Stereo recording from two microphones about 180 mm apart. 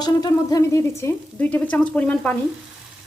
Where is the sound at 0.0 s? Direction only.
20° left (ahead or behind).